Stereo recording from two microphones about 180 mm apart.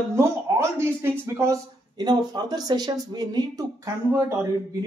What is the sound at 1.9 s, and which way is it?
Speech, 25° right (ahead or behind).